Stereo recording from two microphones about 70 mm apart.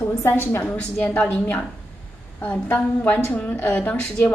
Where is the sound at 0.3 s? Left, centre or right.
Left.